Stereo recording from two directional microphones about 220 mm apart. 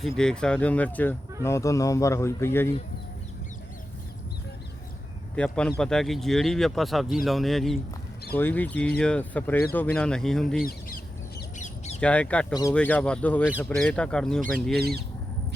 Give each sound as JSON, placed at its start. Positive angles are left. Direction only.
{"t": 0.0, "sound": "speech", "side_deg": 5}
{"t": 5.4, "sound": "speech", "side_deg": 5}
{"t": 10.6, "sound": "bird", "side_deg": 40}
{"t": 11.9, "sound": "speech", "side_deg": 5}